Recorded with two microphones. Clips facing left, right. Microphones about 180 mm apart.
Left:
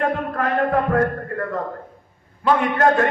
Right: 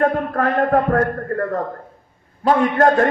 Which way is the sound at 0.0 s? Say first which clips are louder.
Right 4 dB; 45° right (ahead or behind).